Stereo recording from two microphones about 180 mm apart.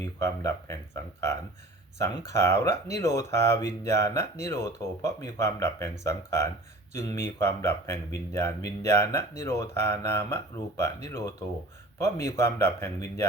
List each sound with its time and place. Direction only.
0.0 s speech: 15° left (ahead or behind)